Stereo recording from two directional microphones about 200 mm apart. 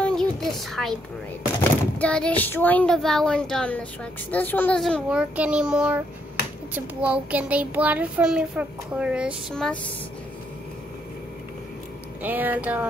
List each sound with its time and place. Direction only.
0.0 s a sound: 5° left (ahead or behind)
2.0 s speech: 5° left (ahead or behind)
12.2 s speech: 10° right (ahead or behind)